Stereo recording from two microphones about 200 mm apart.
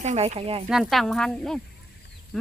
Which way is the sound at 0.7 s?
Centre (ahead or behind).